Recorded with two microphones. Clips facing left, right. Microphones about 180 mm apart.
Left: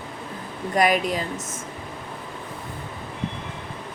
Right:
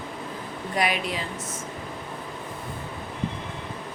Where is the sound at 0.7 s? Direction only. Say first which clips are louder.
Left 6 dB; 45° left (ahead or behind).